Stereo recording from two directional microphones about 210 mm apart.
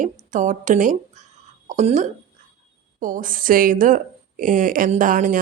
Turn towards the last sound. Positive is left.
turn(degrees=-40)  # may be behind; listen again after turning